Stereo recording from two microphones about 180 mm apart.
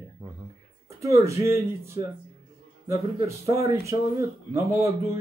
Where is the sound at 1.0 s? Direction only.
15° right (ahead or behind).